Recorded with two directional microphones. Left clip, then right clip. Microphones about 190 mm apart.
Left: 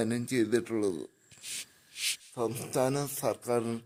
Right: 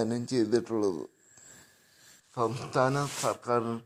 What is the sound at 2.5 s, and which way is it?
Speech, 15° left (ahead or behind).